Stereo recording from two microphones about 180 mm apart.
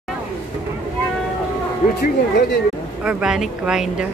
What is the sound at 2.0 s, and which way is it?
Speech, 65° left (ahead or behind).